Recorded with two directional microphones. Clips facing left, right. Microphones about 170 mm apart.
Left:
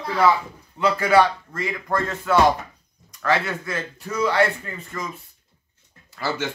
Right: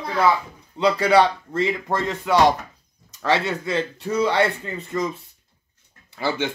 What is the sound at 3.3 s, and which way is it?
Speech, 25° right (ahead or behind).